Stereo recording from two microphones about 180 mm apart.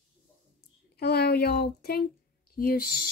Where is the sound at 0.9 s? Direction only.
60° left (ahead or behind).